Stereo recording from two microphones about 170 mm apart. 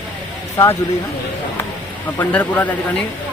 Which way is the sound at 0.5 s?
20° left (ahead or behind).